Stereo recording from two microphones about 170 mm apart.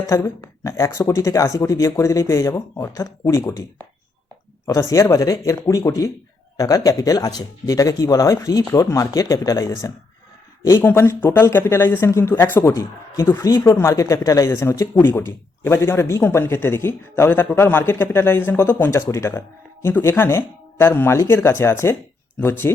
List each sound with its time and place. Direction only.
0.1 s a woman's voice: 20° left (ahead or behind)